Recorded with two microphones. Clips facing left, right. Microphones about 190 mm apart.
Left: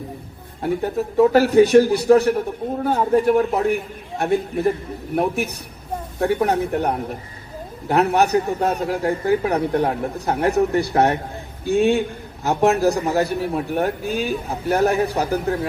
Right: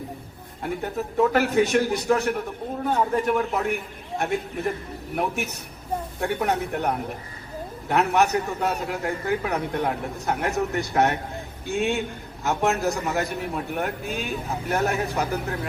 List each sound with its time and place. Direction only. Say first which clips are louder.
0.6 s a man's voice: left 6 dB; 35° left (ahead or behind)